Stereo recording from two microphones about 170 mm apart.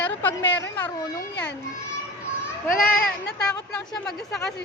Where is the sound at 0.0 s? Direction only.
10° left (ahead or behind).